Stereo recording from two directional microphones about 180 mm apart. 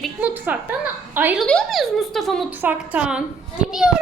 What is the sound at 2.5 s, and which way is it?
A woman's voice, 10° right (ahead or behind).